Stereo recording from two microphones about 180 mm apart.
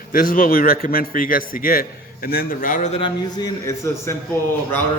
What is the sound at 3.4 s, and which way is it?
Speech, 15° left (ahead or behind).